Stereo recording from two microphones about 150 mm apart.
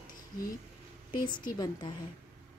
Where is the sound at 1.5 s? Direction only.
30° left (ahead or behind).